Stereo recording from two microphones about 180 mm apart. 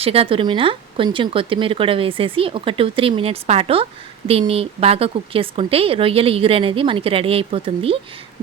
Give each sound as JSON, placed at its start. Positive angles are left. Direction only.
{"t": 0.0, "sound": "a woman's voice", "side_deg": -30}